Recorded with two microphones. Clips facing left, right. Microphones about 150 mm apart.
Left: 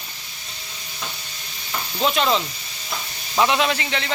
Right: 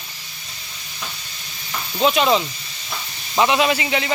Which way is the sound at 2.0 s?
5° right (ahead or behind).